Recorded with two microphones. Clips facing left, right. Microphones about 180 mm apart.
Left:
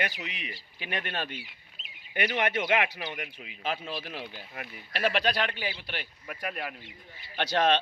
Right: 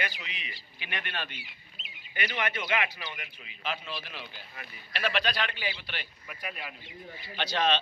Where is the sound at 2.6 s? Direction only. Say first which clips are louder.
Left 4 dB; 65° left (ahead or behind).